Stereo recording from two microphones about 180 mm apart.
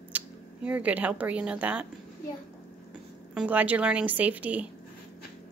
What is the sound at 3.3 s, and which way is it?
A woman's voice, 10° right (ahead or behind).